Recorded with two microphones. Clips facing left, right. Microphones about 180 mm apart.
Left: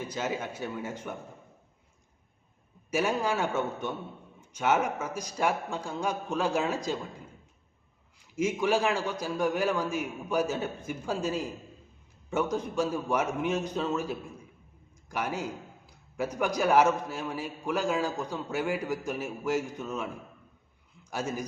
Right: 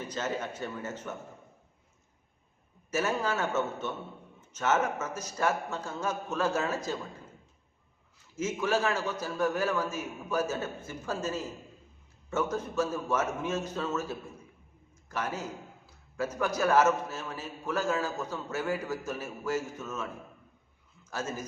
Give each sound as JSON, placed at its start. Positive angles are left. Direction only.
{"t": 0.0, "sound": "a man's voice", "side_deg": 10}
{"t": 2.9, "sound": "a man's voice", "side_deg": 15}
{"t": 8.2, "sound": "a man's voice", "side_deg": 15}
{"t": 21.1, "sound": "a man's voice", "side_deg": 15}